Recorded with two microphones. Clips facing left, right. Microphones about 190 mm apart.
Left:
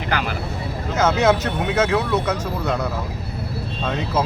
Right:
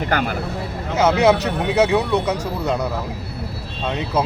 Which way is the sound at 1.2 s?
15° right (ahead or behind).